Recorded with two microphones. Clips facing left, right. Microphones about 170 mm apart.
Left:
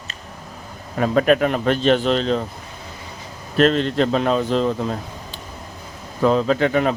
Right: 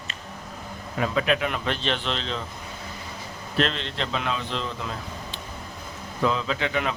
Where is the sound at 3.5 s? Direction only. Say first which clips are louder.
Left 10 dB; 45° left (ahead or behind).